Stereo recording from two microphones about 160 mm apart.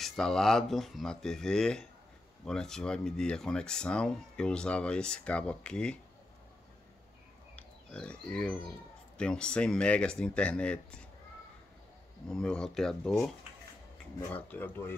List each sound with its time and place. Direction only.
0.0 s speech: 5° left (ahead or behind)
7.5 s speech: 5° left (ahead or behind)
12.3 s speech: 5° left (ahead or behind)